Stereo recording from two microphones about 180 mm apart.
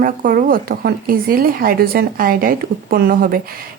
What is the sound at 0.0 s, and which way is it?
A woman's voice, 50° right (ahead or behind).